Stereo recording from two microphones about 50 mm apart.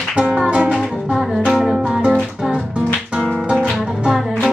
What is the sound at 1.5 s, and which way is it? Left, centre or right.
Music, centre.